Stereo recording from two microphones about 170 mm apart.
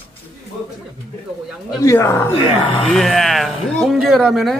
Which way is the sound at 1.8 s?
15° left (ahead or behind).